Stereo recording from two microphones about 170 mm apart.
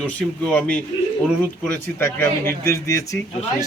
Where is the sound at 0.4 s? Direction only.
5° left (ahead or behind).